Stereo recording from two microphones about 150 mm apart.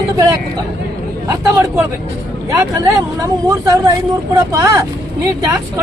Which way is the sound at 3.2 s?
20° right (ahead or behind).